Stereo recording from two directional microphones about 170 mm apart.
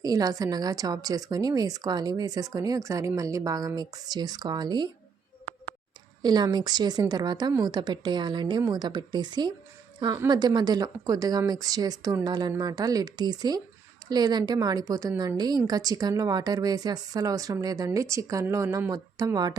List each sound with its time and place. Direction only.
0.0 s speech: 20° right (ahead or behind)
6.2 s speech: 25° right (ahead or behind)